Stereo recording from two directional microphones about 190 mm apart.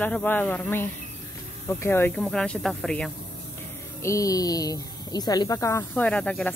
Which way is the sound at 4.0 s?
15° left (ahead or behind).